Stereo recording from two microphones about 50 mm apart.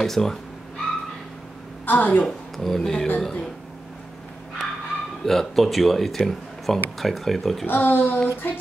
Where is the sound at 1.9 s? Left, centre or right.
Left.